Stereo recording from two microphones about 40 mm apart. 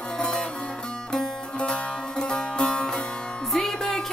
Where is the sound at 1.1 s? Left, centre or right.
Left.